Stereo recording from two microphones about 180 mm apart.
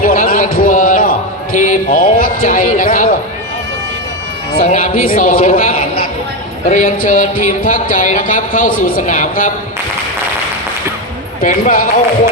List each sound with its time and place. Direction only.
0.0 s a sound: 50° left (ahead or behind)
1.5 s a man's voice: 45° left (ahead or behind)
4.5 s a man's voice: 45° left (ahead or behind)
6.7 s music: 45° left (ahead or behind)
11.4 s music: 50° left (ahead or behind)